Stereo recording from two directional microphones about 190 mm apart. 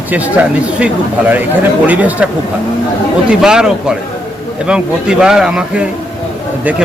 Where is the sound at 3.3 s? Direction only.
5° right (ahead or behind).